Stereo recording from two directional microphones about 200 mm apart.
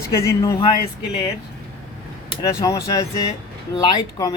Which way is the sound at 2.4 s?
15° left (ahead or behind).